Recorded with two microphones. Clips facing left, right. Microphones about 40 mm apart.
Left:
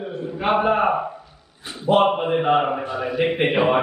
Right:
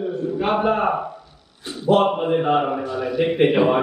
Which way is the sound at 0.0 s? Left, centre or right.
Centre.